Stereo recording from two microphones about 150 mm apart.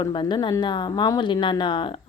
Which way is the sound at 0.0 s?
30° left (ahead or behind).